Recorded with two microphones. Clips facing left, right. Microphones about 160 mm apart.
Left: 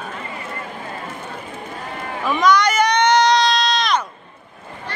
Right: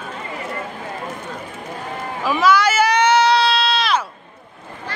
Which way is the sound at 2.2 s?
5° right (ahead or behind).